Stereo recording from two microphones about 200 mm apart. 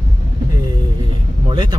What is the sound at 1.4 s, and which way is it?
Speech, 20° right (ahead or behind).